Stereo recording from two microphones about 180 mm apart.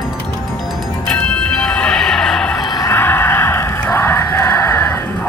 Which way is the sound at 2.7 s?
15° left (ahead or behind).